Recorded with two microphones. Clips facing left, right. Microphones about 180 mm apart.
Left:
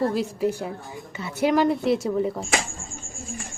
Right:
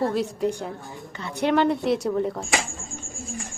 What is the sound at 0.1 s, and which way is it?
Speech, 5° left (ahead or behind).